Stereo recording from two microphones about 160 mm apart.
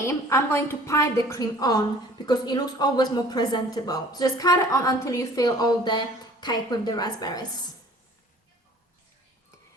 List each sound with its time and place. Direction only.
0.0 s speech: 15° left (ahead or behind)